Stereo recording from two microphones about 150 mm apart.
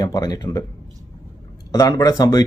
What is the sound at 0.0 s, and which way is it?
Speech, 25° left (ahead or behind).